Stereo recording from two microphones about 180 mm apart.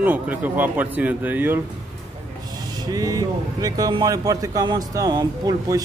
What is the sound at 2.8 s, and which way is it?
Speech, 20° right (ahead or behind).